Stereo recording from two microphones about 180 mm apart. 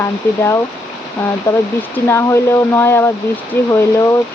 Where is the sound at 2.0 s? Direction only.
15° left (ahead or behind).